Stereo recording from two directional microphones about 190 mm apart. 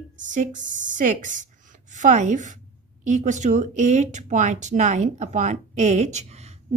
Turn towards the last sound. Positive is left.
turn(degrees=-35)  # may be behind; listen again after turning